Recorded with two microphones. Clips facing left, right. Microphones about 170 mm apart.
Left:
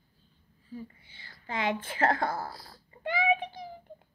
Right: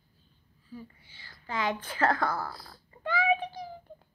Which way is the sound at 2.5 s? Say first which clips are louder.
Right 1 dB; 40° left (ahead or behind).